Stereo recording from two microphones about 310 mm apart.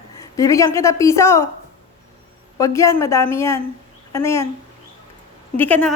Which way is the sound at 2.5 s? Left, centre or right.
Centre.